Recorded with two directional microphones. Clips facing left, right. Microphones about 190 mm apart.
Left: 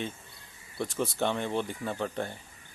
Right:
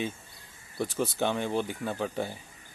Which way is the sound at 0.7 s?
Centre (ahead or behind).